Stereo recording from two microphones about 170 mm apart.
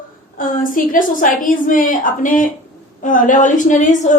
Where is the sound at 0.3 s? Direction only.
55° left (ahead or behind).